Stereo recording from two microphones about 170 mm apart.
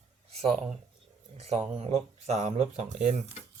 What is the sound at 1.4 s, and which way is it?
Speech, 40° right (ahead or behind).